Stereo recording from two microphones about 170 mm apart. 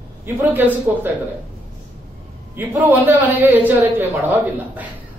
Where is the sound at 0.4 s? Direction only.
10° right (ahead or behind).